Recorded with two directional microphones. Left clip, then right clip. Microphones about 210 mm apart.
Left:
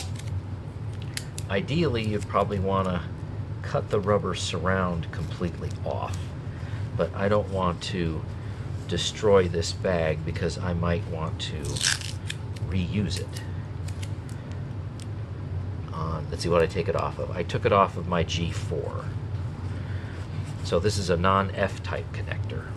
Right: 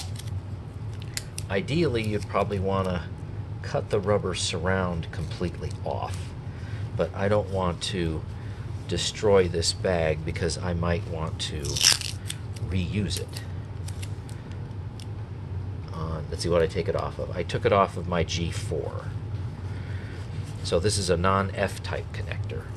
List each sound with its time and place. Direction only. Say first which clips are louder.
1.5 s speech: right 1 dB; 15° right (ahead or behind)
11.6 s a sound: right 5 dB; 10° right (ahead or behind)
16.0 s speech: left 1 dB; 10° right (ahead or behind)
20.6 s speech: right 1 dB; 15° right (ahead or behind)